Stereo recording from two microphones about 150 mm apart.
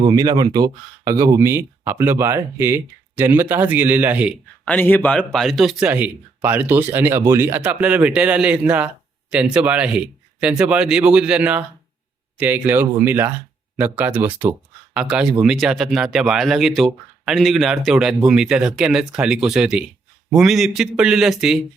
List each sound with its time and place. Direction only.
0.1 s a man's voice: 25° right (ahead or behind); by 4.4 s 10° right (ahead or behind)
4.6 s a man's voice: 10° left (ahead or behind)